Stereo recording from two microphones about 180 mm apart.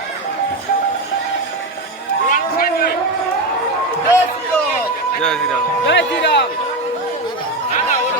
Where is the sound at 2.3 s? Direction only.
55° left (ahead or behind).